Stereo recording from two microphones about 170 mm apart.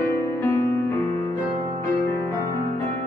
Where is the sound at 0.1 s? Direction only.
15° left (ahead or behind).